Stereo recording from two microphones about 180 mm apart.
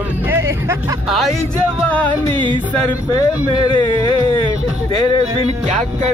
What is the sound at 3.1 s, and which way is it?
Speech, 20° left (ahead or behind).